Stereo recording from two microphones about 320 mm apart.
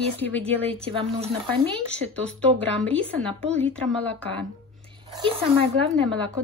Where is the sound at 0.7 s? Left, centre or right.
Centre.